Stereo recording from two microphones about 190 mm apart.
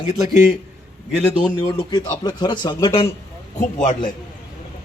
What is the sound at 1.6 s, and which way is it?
Speech, 25° left (ahead or behind).